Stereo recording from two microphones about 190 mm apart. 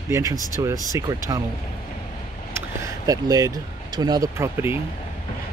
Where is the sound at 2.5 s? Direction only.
15° right (ahead or behind).